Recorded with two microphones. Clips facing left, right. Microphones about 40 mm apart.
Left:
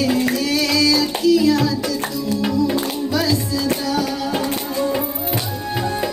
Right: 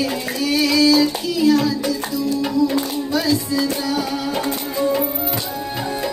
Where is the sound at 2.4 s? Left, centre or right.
Left.